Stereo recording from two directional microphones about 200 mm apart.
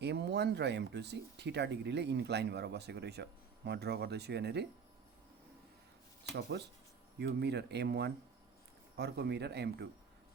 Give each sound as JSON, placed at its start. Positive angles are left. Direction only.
{"t": 0.0, "sound": "speech", "side_deg": -55}
{"t": 6.3, "sound": "speech", "side_deg": -60}